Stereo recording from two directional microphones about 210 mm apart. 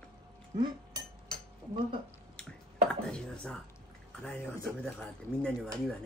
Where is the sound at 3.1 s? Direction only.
5° left (ahead or behind).